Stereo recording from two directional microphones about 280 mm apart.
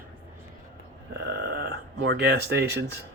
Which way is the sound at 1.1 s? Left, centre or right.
Right.